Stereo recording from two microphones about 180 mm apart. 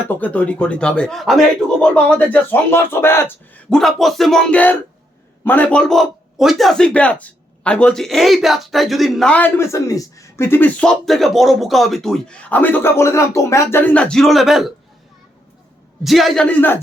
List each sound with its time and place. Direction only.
0.1 s a man's voice: 10° left (ahead or behind)
16.0 s a man's voice: centre (ahead or behind)